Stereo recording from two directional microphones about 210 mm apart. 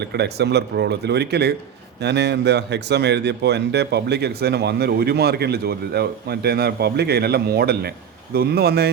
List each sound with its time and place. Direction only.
0.0 s a man's voice: 50° right (ahead or behind)